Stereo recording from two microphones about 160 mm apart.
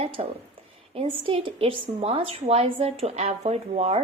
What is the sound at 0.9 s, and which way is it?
A woman's voice, 35° right (ahead or behind).